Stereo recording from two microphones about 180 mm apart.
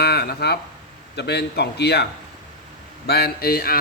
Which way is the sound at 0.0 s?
60° left (ahead or behind).